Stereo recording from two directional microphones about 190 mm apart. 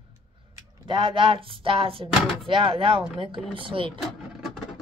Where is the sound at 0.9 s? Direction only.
25° right (ahead or behind).